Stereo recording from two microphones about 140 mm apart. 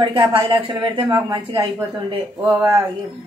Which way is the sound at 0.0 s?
40° right (ahead or behind).